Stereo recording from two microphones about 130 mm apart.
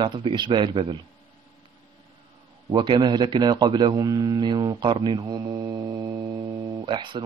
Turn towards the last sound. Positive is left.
turn(degrees=-35)  # may be behind; listen again after turning